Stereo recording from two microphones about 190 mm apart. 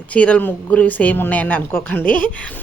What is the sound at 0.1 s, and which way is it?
Speech, 5° left (ahead or behind).